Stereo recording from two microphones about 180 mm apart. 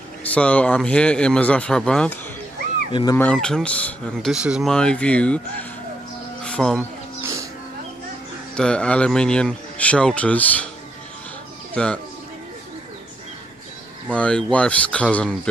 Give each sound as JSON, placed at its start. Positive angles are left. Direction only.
{"t": 0.2, "sound": "speech", "side_deg": 5}
{"t": 2.9, "sound": "speech", "side_deg": 25}
{"t": 3.2, "sound": "speech", "side_deg": 5}
{"t": 6.4, "sound": "music", "side_deg": 5}
{"t": 8.5, "sound": "speech", "side_deg": 5}
{"t": 11.7, "sound": "speech", "side_deg": 5}
{"t": 14.1, "sound": "speech", "side_deg": 5}